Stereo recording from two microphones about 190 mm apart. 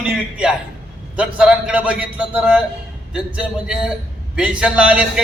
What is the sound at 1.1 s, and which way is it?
A man's voice, 5° right (ahead or behind).